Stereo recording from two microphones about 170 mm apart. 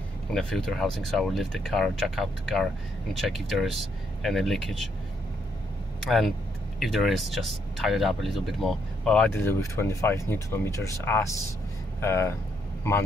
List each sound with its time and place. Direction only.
0.3 s speech: 5° left (ahead or behind)
5.9 s speech: centre (ahead or behind); by 12.4 s 15° left (ahead or behind)